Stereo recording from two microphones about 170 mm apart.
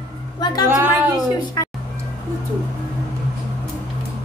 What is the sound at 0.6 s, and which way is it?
Speech, 15° right (ahead or behind).